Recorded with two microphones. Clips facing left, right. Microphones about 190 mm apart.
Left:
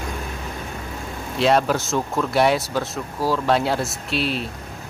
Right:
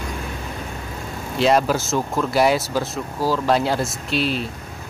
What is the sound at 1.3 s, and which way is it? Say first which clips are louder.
Speech: right 1 dB; centre (ahead or behind).